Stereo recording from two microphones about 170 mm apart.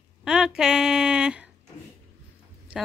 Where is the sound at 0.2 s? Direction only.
5° right (ahead or behind).